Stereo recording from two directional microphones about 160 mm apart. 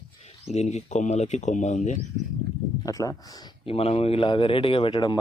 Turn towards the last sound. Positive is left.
turn(degrees=30)  # may be behind; listen again after turning